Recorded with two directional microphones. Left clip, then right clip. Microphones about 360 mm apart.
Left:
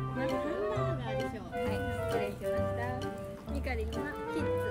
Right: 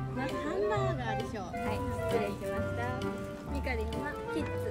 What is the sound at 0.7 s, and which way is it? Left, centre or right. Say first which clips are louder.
Music: right 2 dB; centre.